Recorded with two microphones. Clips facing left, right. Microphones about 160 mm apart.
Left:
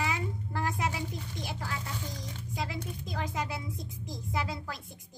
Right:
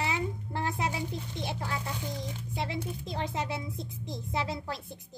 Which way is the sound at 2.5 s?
25° right (ahead or behind).